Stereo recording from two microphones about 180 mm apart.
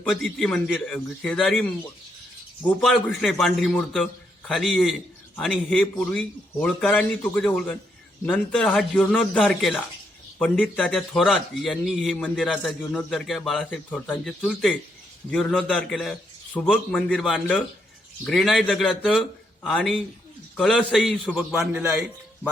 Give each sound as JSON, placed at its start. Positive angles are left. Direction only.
{"t": 0.0, "sound": "a man's voice", "side_deg": 5}
{"t": 2.6, "sound": "a man's voice", "side_deg": 5}